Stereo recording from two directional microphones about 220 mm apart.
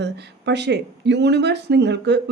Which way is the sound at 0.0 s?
50° right (ahead or behind).